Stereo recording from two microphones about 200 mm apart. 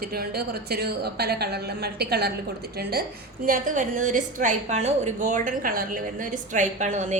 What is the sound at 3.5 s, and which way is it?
A woman's voice, 40° right (ahead or behind).